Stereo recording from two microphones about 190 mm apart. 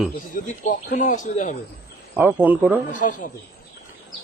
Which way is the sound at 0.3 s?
45° left (ahead or behind).